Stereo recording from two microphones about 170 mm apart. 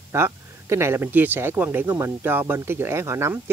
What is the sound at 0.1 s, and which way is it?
Speech, 15° right (ahead or behind).